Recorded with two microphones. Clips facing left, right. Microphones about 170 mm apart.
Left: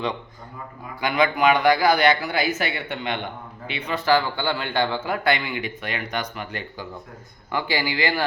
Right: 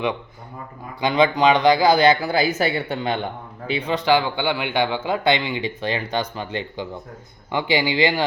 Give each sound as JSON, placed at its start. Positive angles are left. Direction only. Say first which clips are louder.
{"t": 1.0, "sound": "a man's voice", "louder": "right 3 dB", "side_deg": -25}
{"t": 3.9, "sound": "speech", "louder": "right 1 dB", "side_deg": -15}